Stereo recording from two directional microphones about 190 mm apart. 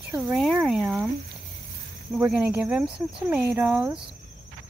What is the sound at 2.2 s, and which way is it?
Speech, 10° right (ahead or behind).